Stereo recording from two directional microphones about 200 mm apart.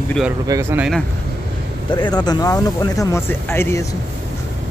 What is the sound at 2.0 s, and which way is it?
Speech, 20° left (ahead or behind).